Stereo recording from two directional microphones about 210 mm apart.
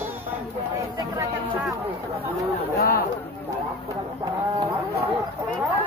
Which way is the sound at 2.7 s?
45° left (ahead or behind).